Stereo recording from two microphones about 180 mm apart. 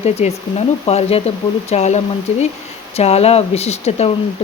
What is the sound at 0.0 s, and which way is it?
Speech, 35° left (ahead or behind).